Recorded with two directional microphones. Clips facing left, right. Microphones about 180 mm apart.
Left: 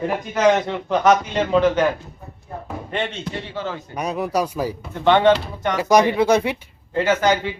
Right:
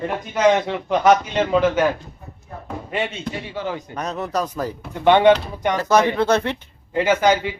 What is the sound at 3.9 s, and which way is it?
Speech, 10° left (ahead or behind).